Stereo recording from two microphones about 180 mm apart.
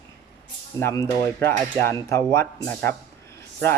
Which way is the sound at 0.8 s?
15° left (ahead or behind).